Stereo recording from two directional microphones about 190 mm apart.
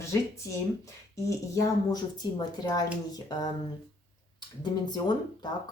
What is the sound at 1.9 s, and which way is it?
Speech, 20° left (ahead or behind).